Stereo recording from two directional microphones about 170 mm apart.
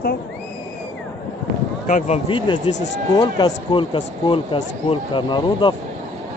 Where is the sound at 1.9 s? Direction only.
50° left (ahead or behind).